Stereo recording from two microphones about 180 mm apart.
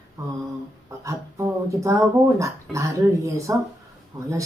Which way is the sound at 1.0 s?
15° right (ahead or behind).